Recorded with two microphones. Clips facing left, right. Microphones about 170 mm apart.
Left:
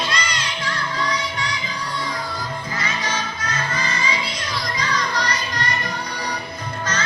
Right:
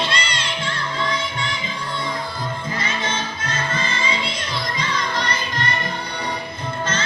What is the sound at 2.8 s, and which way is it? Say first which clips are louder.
Music: even; 25° right (ahead or behind).